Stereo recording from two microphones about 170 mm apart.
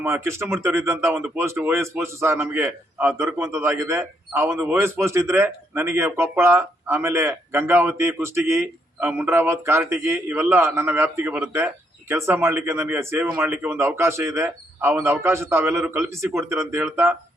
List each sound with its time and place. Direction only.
0.0 s speech: 15° right (ahead or behind)